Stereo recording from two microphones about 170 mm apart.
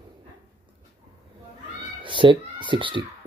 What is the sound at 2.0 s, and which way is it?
A child's voice, 30° right (ahead or behind).